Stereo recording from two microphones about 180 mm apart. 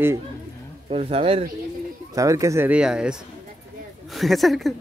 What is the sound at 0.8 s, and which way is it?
Speech, 35° right (ahead or behind).